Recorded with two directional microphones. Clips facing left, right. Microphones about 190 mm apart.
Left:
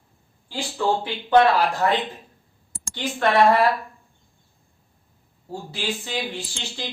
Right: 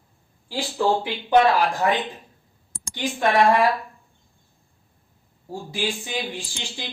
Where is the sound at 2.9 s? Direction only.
15° right (ahead or behind).